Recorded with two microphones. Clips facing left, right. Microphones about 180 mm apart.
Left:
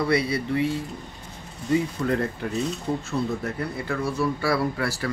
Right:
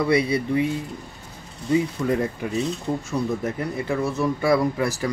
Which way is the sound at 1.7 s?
15° right (ahead or behind).